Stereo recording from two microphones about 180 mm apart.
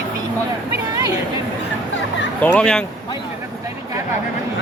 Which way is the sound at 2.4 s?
5° left (ahead or behind).